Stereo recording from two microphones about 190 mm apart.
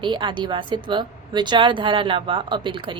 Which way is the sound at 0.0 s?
25° right (ahead or behind).